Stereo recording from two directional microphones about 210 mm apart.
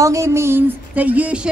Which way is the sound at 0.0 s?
15° right (ahead or behind).